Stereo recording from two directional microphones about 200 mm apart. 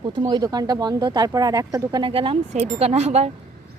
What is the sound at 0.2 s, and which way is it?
Speech, 20° right (ahead or behind).